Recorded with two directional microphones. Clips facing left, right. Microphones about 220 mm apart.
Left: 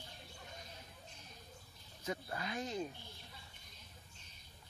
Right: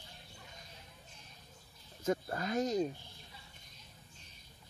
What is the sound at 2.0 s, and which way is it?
Speech, 45° right (ahead or behind).